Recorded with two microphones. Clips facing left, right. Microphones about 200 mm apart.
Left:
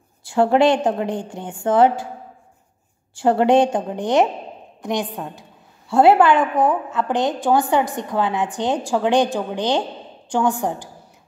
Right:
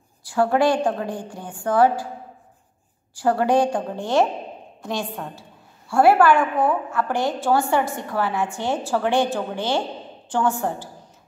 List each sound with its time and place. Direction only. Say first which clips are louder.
0.2 s a woman's voice: left 3 dB; 25° left (ahead or behind)
3.2 s a woman's voice: left 4 dB; 25° left (ahead or behind)